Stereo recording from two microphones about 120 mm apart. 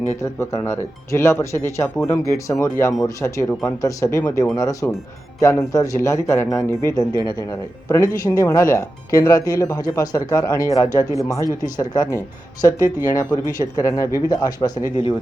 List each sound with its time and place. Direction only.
0.2 s speech: 25° left (ahead or behind)